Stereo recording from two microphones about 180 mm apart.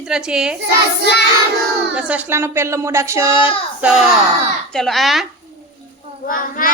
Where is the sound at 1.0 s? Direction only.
65° left (ahead or behind).